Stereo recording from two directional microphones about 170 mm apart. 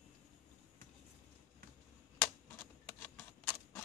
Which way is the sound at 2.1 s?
10° left (ahead or behind).